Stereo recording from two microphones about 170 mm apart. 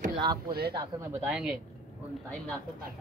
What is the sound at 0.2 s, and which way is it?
Speech, 25° right (ahead or behind).